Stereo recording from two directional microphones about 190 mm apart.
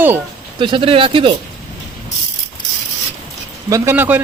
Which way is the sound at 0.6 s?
25° right (ahead or behind).